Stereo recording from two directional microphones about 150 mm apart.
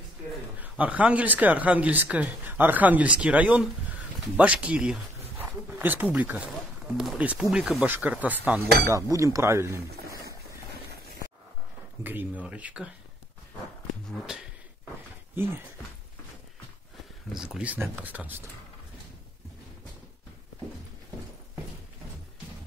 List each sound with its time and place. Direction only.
0.6 s speech: 10° right (ahead or behind)
8.8 s speech: 20° right (ahead or behind)
12.0 s speech: 10° right (ahead or behind)
17.3 s speech: 5° right (ahead or behind)